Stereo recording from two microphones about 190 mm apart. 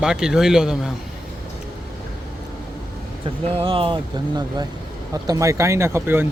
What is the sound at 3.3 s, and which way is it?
Speech, 30° right (ahead or behind).